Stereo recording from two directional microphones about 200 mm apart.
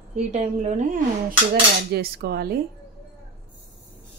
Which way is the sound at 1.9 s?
50° right (ahead or behind).